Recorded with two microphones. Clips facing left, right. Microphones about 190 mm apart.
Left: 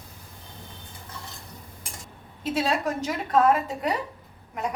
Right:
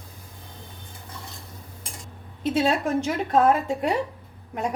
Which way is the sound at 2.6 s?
25° right (ahead or behind).